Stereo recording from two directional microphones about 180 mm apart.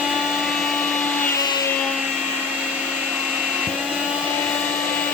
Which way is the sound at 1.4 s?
20° left (ahead or behind).